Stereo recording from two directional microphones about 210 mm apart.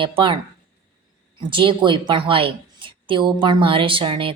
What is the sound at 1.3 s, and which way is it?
A woman's voice, 25° right (ahead or behind).